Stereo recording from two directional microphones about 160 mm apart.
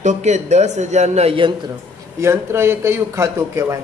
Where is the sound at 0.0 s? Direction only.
45° right (ahead or behind).